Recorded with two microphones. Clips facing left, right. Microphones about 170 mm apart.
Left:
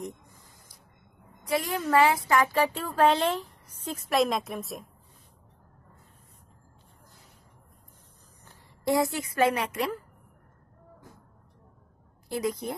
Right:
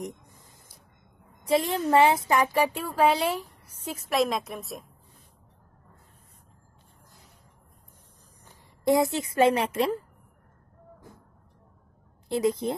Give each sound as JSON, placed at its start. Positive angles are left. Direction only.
{"t": 1.4, "sound": "speech", "side_deg": -25}
{"t": 8.5, "sound": "a woman's voice", "side_deg": -20}
{"t": 12.3, "sound": "speech", "side_deg": -25}